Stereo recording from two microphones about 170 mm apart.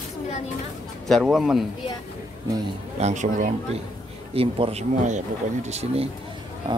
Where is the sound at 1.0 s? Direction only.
Centre (ahead or behind).